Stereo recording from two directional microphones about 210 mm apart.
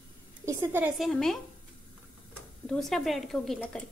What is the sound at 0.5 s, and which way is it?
Speech, 10° right (ahead or behind).